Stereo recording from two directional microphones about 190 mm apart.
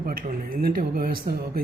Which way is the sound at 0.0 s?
50° right (ahead or behind).